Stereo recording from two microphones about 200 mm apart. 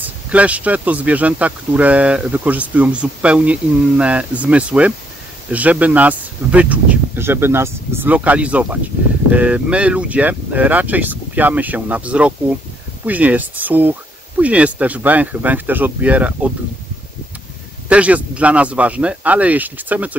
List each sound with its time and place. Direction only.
0.0 s speech: 5° right (ahead or behind)
17.8 s speech: 5° right (ahead or behind)